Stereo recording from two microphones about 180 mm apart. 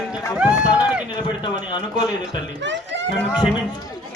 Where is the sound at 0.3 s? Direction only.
5° right (ahead or behind).